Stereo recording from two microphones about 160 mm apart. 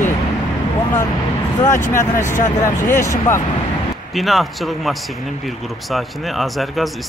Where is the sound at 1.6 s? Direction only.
50° left (ahead or behind).